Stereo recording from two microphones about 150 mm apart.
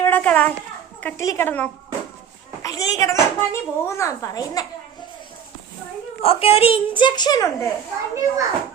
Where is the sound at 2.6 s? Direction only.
25° left (ahead or behind).